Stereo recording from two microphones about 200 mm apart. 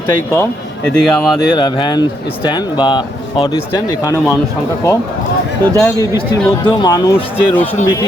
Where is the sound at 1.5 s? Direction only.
25° left (ahead or behind).